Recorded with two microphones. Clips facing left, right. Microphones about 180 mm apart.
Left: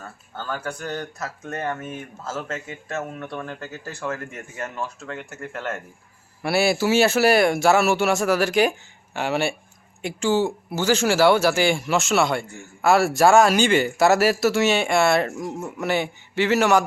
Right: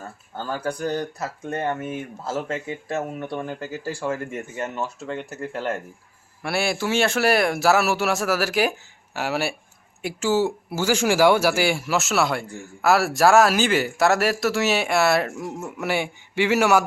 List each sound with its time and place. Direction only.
0.4 s speech: 30° right (ahead or behind)
1.8 s speech: 15° right (ahead or behind)
3.6 s speech: 30° right (ahead or behind)
4.0 s speech: 10° right (ahead or behind)
5.3 s speech: 35° right (ahead or behind)
6.4 s speech: centre (ahead or behind)